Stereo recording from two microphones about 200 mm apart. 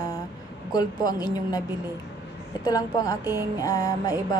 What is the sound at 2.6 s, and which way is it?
Speech, 20° left (ahead or behind).